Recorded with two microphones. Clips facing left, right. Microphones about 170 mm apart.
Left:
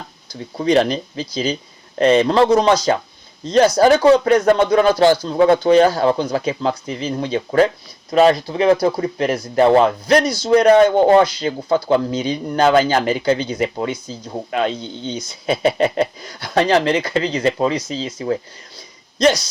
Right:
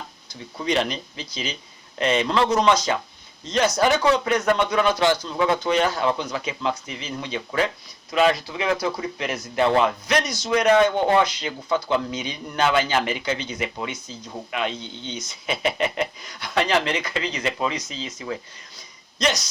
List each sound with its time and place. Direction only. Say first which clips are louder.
0.5 s speech: left 8 dB; 35° left (ahead or behind)